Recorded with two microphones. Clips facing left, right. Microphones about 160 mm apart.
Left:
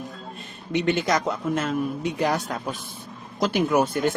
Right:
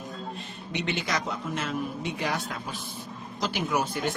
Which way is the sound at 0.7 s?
50° left (ahead or behind).